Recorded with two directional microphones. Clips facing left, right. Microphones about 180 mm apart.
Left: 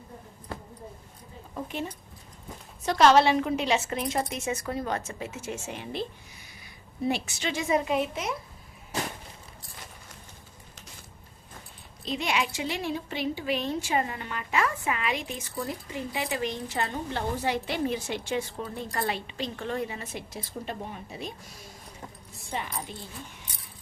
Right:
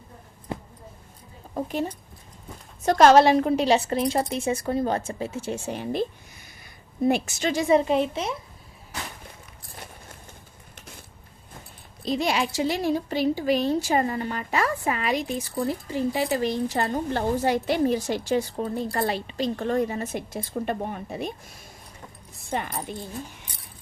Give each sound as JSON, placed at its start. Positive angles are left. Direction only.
{"t": 0.5, "sound": "a sound", "side_deg": -20}
{"t": 1.5, "sound": "a woman's voice", "side_deg": -40}
{"t": 12.0, "sound": "a woman's voice", "side_deg": -40}
{"t": 22.4, "sound": "a woman's voice", "side_deg": -50}